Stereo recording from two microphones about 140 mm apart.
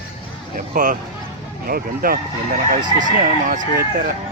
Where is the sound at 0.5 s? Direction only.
70° right (ahead or behind).